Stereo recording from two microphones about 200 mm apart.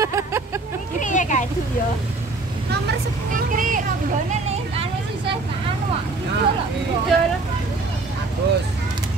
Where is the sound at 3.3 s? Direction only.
40° right (ahead or behind).